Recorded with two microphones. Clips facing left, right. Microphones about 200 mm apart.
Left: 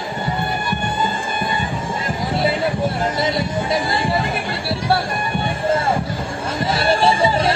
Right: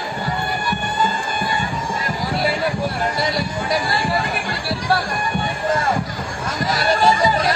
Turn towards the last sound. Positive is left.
turn(degrees=30)  # may be behind; listen again after turning